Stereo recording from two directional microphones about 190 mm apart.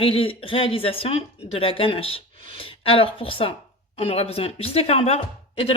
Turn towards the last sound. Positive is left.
turn(degrees=30)  # may be behind; listen again after turning